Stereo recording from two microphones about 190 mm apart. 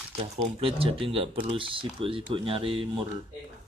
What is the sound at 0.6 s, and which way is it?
Speech, 30° right (ahead or behind).